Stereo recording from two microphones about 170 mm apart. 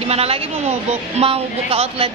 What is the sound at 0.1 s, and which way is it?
A woman's voice, 35° right (ahead or behind).